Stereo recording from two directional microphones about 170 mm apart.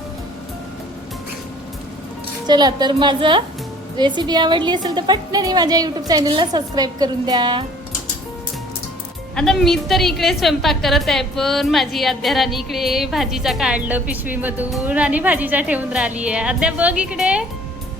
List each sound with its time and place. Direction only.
2.5 s a woman's voice: 25° right (ahead or behind)
9.3 s a woman's voice: centre (ahead or behind)